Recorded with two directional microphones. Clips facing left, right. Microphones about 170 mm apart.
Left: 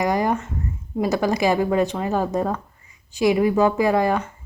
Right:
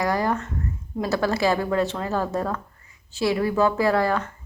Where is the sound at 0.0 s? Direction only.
20° left (ahead or behind).